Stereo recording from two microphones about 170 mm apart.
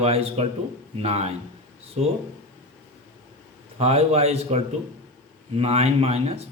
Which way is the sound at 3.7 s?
35° right (ahead or behind).